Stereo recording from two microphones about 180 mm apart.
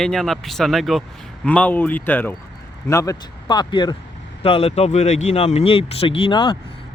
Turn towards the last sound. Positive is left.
turn(degrees=25)  # may be behind; listen again after turning